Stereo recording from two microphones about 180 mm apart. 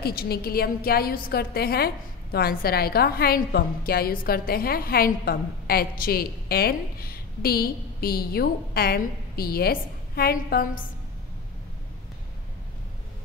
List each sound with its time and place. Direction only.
0.0 s a woman's voice: 60° left (ahead or behind)